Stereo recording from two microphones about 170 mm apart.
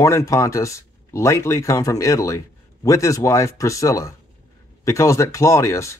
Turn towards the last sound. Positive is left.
turn(degrees=15)  # may be behind; listen again after turning